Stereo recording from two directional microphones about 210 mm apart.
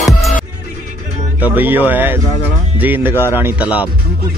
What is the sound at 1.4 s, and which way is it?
Speech, 10° right (ahead or behind).